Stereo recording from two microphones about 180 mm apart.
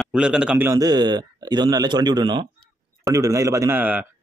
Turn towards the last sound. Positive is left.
turn(degrees=-10)  # may be behind; listen again after turning